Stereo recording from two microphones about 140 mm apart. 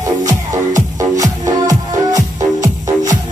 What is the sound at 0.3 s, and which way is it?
Music, 25° right (ahead or behind).